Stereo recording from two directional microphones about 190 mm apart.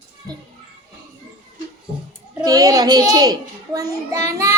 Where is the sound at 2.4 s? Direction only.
20° right (ahead or behind).